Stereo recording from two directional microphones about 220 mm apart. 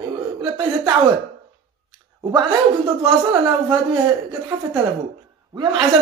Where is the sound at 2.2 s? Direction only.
20° right (ahead or behind).